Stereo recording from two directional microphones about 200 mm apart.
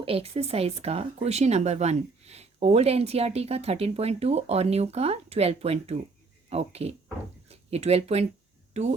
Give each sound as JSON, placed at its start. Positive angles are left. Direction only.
{"t": 0.0, "sound": "speech", "side_deg": -30}